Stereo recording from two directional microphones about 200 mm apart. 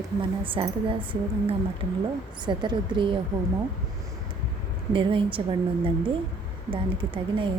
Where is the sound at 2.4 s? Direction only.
25° right (ahead or behind).